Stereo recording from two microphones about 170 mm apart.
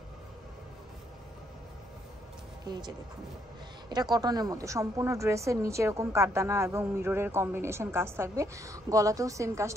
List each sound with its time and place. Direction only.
2.6 s speech: 25° right (ahead or behind)
3.9 s a woman's voice: 25° right (ahead or behind)